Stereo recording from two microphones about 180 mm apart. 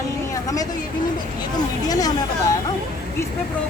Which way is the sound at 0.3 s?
20° left (ahead or behind).